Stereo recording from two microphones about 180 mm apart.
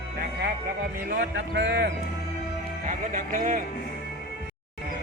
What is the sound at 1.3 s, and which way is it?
Speech, 75° right (ahead or behind).